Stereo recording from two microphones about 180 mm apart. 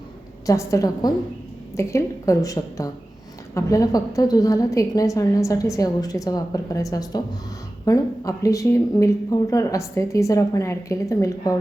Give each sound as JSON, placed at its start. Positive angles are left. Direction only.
{"t": 0.4, "sound": "a woman's voice", "side_deg": 15}